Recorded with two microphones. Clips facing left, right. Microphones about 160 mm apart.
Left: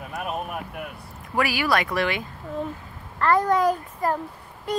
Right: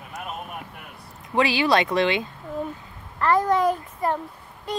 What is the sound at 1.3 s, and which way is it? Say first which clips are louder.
Speech: right 3 dB; 25° right (ahead or behind).